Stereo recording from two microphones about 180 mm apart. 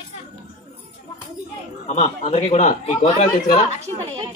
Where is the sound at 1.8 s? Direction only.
40° left (ahead or behind).